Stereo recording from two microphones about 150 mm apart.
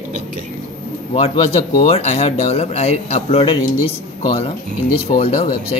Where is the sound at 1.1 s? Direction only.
40° left (ahead or behind).